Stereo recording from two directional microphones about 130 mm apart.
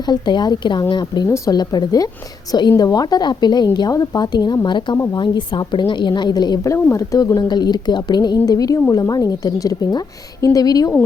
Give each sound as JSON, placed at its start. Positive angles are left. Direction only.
{"t": 0.0, "sound": "a woman's voice", "side_deg": 35}